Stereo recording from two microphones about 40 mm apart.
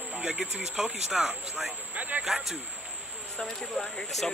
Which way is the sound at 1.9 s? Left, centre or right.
Right.